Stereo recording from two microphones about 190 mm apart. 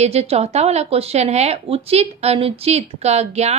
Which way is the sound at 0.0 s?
35° right (ahead or behind).